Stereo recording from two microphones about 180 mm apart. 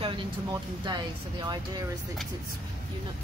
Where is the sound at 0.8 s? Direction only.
25° right (ahead or behind).